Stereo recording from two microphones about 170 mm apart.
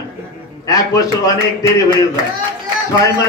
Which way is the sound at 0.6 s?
20° left (ahead or behind).